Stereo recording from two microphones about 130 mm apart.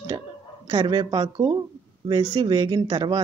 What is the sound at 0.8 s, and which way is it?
Speech, 35° right (ahead or behind).